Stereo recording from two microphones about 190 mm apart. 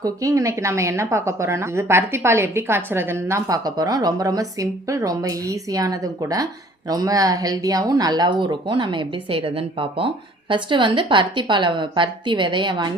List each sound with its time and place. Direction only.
0.0 s a woman's voice: 15° right (ahead or behind)